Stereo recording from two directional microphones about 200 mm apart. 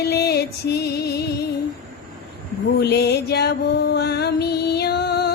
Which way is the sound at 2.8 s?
55° left (ahead or behind).